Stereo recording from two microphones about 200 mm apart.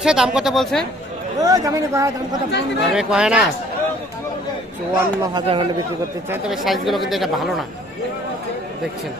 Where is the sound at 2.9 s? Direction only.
5° right (ahead or behind).